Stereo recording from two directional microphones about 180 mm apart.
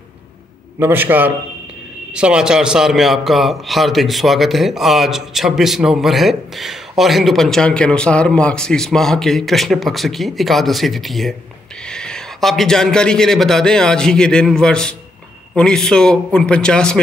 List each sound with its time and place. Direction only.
0.7 s a man's voice: 10° right (ahead or behind); by 17.0 s 5° left (ahead or behind)